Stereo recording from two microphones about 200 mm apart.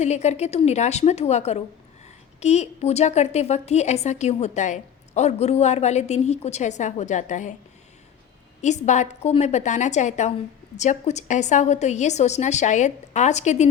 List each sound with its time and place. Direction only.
0.0 s a woman's voice: 35° left (ahead or behind)
8.6 s a woman's voice: 35° left (ahead or behind)